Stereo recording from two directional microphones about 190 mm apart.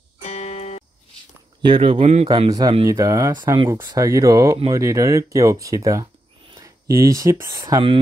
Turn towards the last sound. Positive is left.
turn(degrees=-20)  # may be behind; listen again after turning